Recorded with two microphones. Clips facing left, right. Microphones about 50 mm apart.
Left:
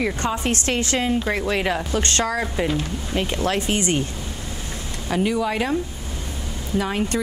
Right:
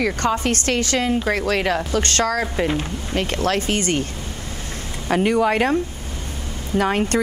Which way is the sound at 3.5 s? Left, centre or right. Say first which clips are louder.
Right 1 dB; right.